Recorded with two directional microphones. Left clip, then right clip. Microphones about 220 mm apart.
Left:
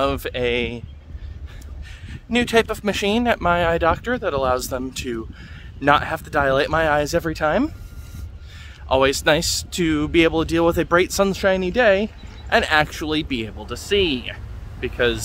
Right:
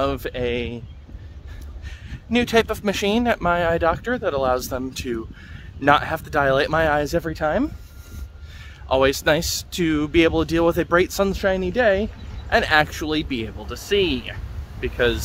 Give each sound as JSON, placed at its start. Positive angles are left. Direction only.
{"t": 0.0, "sound": "speech", "side_deg": 15}
{"t": 2.0, "sound": "speech", "side_deg": 10}
{"t": 8.8, "sound": "speech", "side_deg": 5}